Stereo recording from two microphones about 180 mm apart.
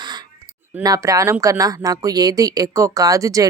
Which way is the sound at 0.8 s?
20° right (ahead or behind).